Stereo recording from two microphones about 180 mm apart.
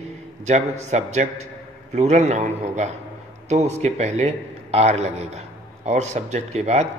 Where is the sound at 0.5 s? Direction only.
40° right (ahead or behind).